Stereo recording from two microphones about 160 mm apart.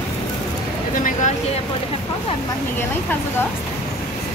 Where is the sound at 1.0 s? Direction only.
55° left (ahead or behind).